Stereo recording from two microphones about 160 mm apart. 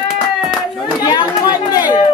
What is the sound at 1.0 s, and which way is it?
Chatter, 25° left (ahead or behind).